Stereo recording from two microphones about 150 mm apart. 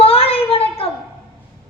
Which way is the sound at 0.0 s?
40° left (ahead or behind).